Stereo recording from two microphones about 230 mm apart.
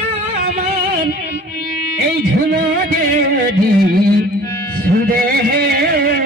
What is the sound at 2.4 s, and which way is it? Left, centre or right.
Music, right.